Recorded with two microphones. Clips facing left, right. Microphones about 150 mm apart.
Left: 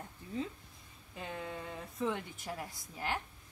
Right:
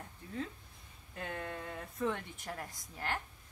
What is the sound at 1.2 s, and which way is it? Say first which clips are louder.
Speech: even; 5° left (ahead or behind).